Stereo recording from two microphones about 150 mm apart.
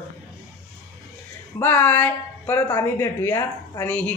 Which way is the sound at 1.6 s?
15° left (ahead or behind).